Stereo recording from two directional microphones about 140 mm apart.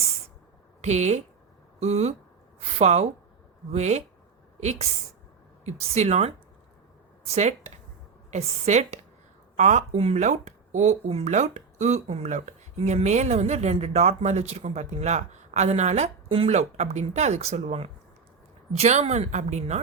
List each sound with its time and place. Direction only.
0.8 s speech: 55° right (ahead or behind)
9.9 s speech: 45° right (ahead or behind)